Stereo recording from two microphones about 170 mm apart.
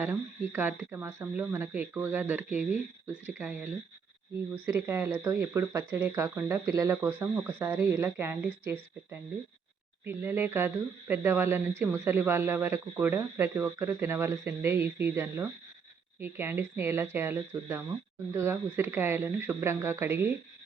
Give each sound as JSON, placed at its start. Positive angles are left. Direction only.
{"t": 0.0, "sound": "speech", "side_deg": -10}
{"t": 10.0, "sound": "speech", "side_deg": -15}